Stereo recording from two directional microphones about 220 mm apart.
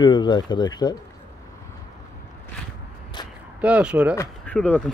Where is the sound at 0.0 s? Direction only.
20° left (ahead or behind).